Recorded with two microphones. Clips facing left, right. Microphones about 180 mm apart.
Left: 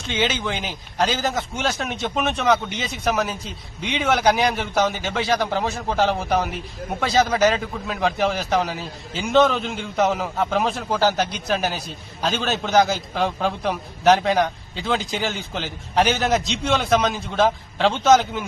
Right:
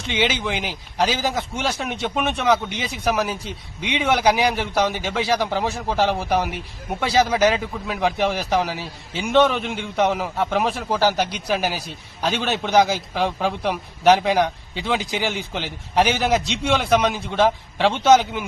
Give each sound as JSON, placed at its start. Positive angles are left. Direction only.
{"t": 0.2, "sound": "a man's voice", "side_deg": -10}